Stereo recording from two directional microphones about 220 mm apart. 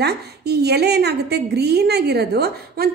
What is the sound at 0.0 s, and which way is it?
A woman's voice, 45° right (ahead or behind).